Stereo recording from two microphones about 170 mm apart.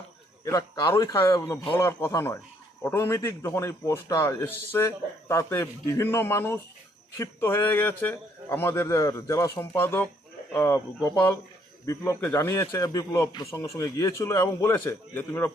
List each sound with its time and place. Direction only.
0.4 s a man's voice: 20° left (ahead or behind)